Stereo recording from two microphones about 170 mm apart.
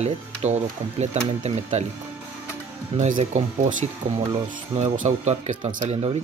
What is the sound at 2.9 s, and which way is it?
Speech, 45° right (ahead or behind).